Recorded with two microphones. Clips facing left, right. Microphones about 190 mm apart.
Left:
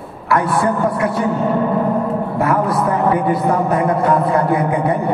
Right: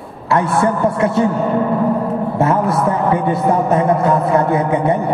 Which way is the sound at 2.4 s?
25° right (ahead or behind).